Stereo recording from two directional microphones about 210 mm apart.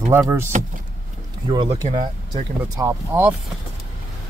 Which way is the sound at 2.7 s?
10° right (ahead or behind).